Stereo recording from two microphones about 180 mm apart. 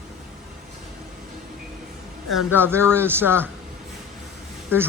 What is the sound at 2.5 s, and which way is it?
Speech, 10° right (ahead or behind).